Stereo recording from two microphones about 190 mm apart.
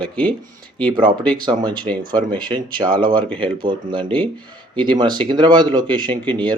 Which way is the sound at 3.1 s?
25° right (ahead or behind).